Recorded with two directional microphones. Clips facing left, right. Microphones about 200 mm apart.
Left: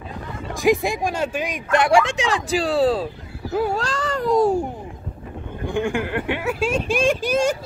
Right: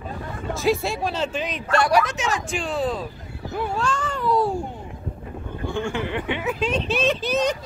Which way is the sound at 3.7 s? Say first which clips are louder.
Left 2 dB; 35° left (ahead or behind).